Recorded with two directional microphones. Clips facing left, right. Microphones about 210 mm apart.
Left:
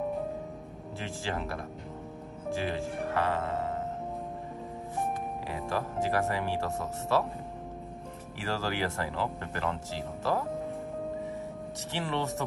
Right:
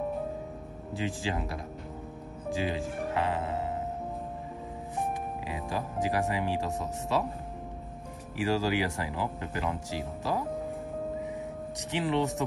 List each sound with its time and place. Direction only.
0.9 s speech: 15° right (ahead or behind)
3.1 s music: 15° right (ahead or behind)
5.5 s speech: 15° right (ahead or behind)
8.4 s speech: 15° right (ahead or behind)
11.9 s speech: 15° right (ahead or behind)